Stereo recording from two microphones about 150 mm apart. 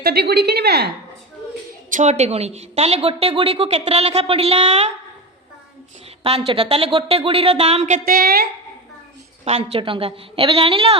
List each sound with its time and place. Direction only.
0.0 s a woman's voice: 90° right
1.9 s a woman's voice: 55° right (ahead or behind)
6.2 s a woman's voice: 40° right (ahead or behind)
7.9 s a woman's voice: 75° right (ahead or behind)
9.4 s a woman's voice: 40° right (ahead or behind)